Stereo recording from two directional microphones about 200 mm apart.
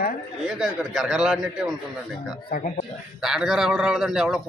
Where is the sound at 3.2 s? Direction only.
Centre (ahead or behind).